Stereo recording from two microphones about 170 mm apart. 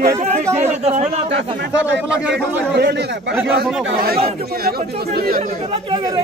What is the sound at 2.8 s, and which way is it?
Speech, 80° right.